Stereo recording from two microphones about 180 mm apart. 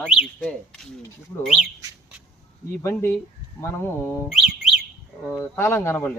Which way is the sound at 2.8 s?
15° left (ahead or behind).